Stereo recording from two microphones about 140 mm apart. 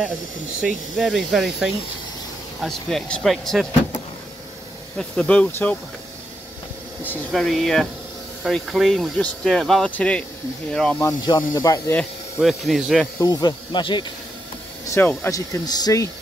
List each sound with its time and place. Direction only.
0.6 s speech: centre (ahead or behind)
4.9 s speech: 10° left (ahead or behind)
7.3 s speech: centre (ahead or behind)
11.2 s speech: 25° left (ahead or behind)
12.4 s speech: centre (ahead or behind)
13.2 s speech: 30° left (ahead or behind)
14.9 s speech: 15° left (ahead or behind)
15.3 s speech: 25° left (ahead or behind)